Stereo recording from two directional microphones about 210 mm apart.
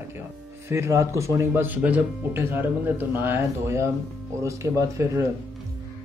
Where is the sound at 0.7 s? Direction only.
15° right (ahead or behind).